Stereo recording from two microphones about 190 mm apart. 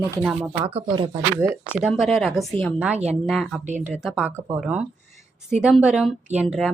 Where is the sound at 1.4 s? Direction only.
5° right (ahead or behind).